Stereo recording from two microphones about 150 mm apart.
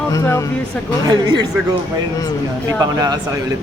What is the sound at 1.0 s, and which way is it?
Speech, 25° right (ahead or behind).